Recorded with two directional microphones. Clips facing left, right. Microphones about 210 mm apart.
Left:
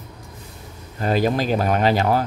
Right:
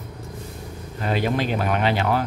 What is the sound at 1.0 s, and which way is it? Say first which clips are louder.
Speech: left 3 dB; 40° left (ahead or behind).